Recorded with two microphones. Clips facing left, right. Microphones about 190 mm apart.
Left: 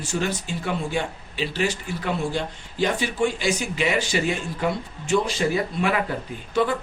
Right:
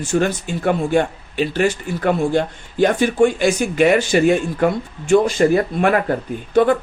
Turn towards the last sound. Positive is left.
turn(degrees=-55)  # may be behind; listen again after turning